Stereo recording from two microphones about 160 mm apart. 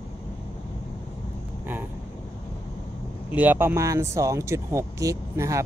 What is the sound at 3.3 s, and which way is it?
Speech, 10° right (ahead or behind).